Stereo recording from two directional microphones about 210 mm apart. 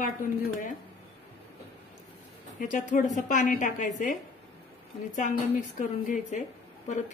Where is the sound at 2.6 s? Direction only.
35° left (ahead or behind).